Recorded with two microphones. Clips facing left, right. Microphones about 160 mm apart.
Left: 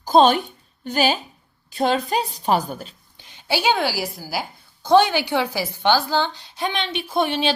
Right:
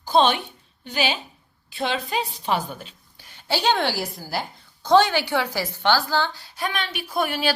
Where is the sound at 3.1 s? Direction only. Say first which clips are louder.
Left 2 dB; 15° left (ahead or behind).